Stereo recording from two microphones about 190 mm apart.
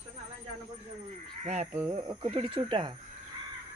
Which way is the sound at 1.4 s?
35° right (ahead or behind).